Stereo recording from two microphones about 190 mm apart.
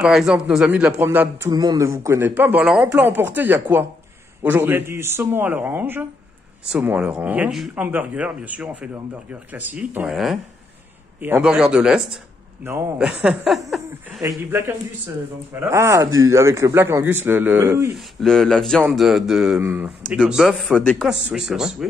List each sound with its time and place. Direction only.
0.0 s speech: 5° right (ahead or behind)
15.6 s speech: 15° right (ahead or behind)
17.9 s speech: 5° left (ahead or behind)